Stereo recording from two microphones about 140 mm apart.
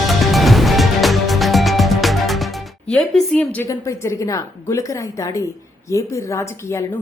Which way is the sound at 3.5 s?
20° left (ahead or behind).